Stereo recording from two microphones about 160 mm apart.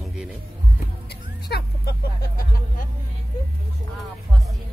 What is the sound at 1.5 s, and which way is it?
Vehicle, 80° left.